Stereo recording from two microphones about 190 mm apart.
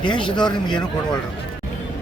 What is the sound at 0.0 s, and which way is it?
Speech, 25° left (ahead or behind).